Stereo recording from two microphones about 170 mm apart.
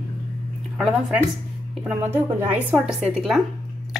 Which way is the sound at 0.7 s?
5° right (ahead or behind).